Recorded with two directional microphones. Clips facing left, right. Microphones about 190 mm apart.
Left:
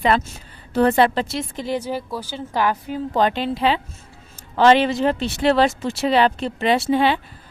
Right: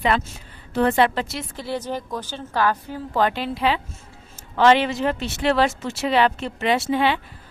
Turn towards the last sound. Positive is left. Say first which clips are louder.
# left 3 dB
turn(degrees=35)  # may be behind; listen again after turning